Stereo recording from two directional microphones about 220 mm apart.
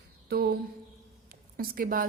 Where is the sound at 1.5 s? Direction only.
40° right (ahead or behind).